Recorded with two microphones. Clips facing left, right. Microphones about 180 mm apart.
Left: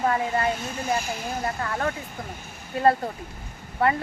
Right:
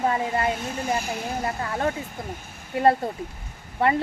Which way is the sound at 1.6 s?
20° right (ahead or behind).